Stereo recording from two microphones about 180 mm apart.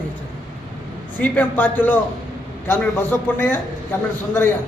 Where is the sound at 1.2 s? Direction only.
10° left (ahead or behind).